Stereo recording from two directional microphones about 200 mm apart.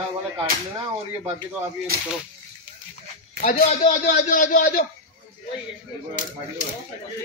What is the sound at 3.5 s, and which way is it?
Speech, 30° left (ahead or behind).